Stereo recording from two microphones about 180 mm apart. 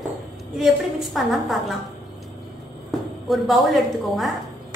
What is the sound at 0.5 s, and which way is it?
A woman's voice, centre (ahead or behind).